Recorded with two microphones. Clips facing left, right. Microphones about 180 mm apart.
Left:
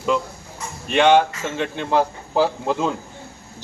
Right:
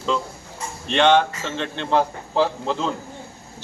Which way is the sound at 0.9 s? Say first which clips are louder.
Left 2 dB; 10° left (ahead or behind).